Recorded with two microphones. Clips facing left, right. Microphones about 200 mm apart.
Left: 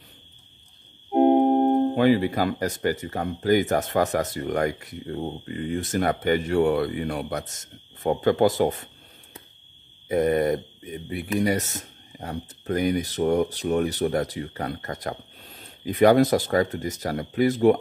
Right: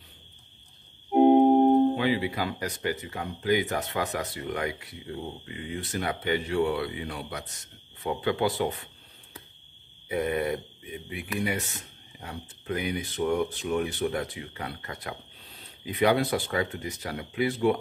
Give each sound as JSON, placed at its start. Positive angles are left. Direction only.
{"t": 2.0, "sound": "speech", "side_deg": 45}
{"t": 10.0, "sound": "speech", "side_deg": 40}